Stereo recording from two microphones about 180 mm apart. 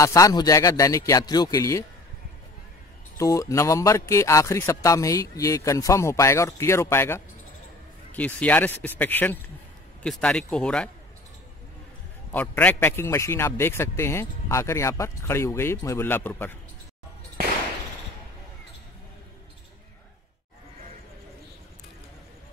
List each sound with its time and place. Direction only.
0.0 s speech: 20° left (ahead or behind)
3.2 s a man's voice: 15° left (ahead or behind)
12.3 s a man's voice: 10° left (ahead or behind)